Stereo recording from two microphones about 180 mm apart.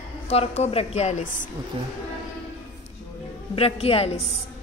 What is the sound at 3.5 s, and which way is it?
Speech, 30° left (ahead or behind).